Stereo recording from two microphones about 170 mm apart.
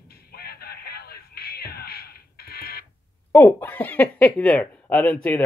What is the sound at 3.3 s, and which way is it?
Speech, 15° left (ahead or behind).